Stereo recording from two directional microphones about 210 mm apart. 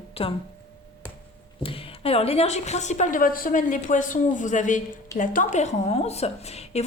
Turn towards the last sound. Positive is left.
turn(degrees=30)  # may be behind; listen again after turning